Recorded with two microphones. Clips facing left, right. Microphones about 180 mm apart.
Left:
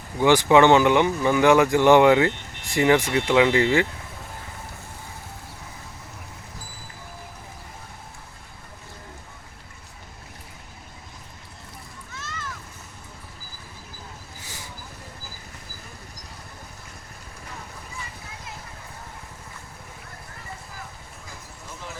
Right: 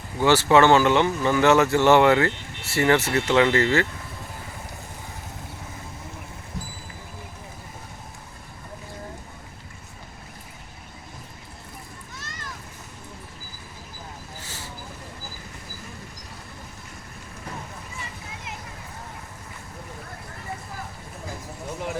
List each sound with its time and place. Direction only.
0.2 s speech: 15° left (ahead or behind)
14.4 s vehicle: 10° left (ahead or behind)